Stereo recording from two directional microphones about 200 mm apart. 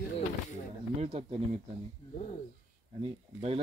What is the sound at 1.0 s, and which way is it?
Speech, 30° right (ahead or behind).